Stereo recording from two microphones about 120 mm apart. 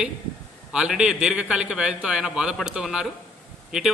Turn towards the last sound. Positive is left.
turn(degrees=-5)  # may be behind; listen again after turning